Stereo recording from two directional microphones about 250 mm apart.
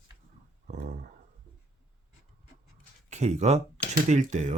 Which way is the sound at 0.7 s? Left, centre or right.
Right.